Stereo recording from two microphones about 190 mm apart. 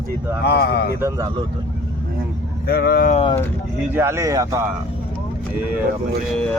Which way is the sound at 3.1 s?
30° left (ahead or behind).